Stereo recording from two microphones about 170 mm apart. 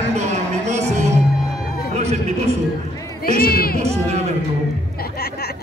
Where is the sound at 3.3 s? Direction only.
60° left (ahead or behind).